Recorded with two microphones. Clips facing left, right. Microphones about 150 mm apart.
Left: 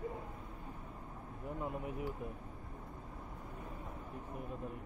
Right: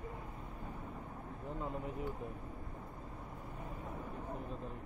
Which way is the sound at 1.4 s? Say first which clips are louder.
Left 1 dB; 15° left (ahead or behind).